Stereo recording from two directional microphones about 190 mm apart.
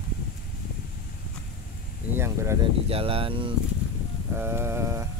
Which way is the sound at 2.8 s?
30° right (ahead or behind).